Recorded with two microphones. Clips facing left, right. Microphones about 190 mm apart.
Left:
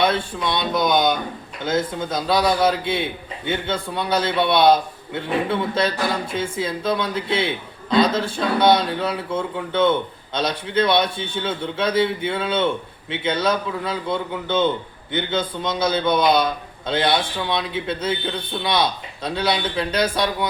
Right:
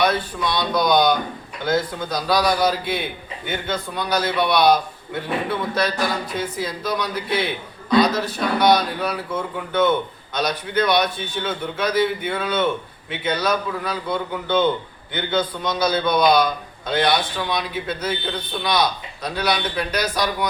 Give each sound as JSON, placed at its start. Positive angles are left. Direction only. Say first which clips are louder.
{"t": 0.0, "sound": "a man's voice", "louder": "even", "side_deg": 25}